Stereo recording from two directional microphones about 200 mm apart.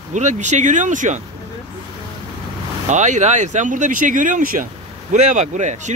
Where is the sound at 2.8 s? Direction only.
35° right (ahead or behind).